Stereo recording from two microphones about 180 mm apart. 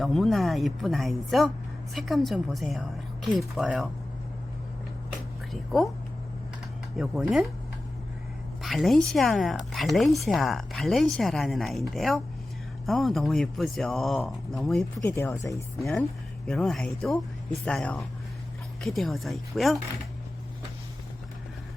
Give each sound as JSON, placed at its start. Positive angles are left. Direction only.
{"t": 0.0, "sound": "speech", "side_deg": 0}
{"t": 5.5, "sound": "speech", "side_deg": 0}
{"t": 6.9, "sound": "speech", "side_deg": 0}
{"t": 8.6, "sound": "speech", "side_deg": 0}
{"t": 16.5, "sound": "speech", "side_deg": 5}